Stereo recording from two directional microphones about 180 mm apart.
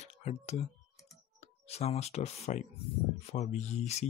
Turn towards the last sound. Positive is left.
turn(degrees=40)  # may be behind; listen again after turning